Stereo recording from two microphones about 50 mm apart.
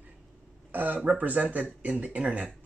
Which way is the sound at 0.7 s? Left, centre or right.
Right.